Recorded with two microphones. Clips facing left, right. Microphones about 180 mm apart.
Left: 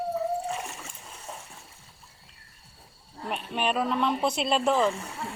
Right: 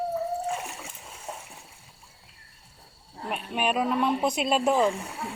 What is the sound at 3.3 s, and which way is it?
Speech, 5° right (ahead or behind).